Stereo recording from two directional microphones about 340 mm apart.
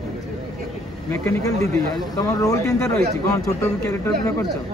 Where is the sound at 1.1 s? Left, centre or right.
Centre.